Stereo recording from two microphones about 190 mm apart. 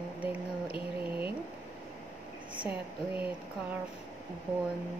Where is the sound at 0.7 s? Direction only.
25° left (ahead or behind).